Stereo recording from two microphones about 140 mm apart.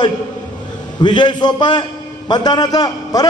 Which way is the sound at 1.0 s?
35° left (ahead or behind).